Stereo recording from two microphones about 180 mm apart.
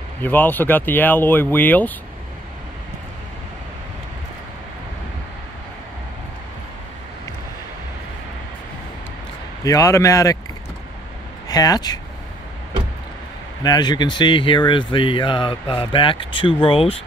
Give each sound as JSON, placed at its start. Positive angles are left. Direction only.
{"t": 0.2, "sound": "speech", "side_deg": 10}
{"t": 9.7, "sound": "speech", "side_deg": 20}
{"t": 11.4, "sound": "speech", "side_deg": 20}
{"t": 13.6, "sound": "speech", "side_deg": 20}